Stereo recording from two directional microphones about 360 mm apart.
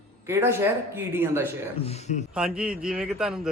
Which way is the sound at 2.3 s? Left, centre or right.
Centre.